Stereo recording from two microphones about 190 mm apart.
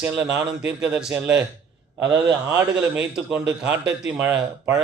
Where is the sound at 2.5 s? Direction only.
15° right (ahead or behind).